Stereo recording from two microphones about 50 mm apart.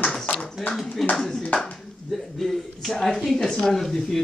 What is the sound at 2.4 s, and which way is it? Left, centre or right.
Speech, centre.